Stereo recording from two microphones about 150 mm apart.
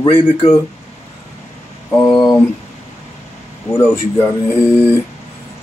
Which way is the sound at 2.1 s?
Centre (ahead or behind).